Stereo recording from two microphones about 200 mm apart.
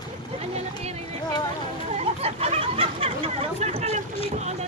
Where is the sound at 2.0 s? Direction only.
30° right (ahead or behind).